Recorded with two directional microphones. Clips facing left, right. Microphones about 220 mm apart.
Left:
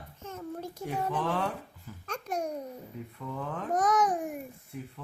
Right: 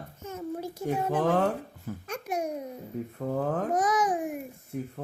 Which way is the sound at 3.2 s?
50° right (ahead or behind).